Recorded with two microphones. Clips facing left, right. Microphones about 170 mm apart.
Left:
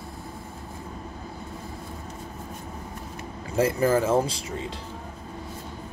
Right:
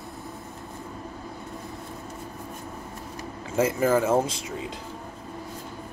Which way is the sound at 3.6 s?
35° left (ahead or behind).